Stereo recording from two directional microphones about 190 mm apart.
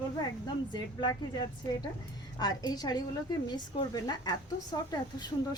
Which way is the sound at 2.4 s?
20° left (ahead or behind).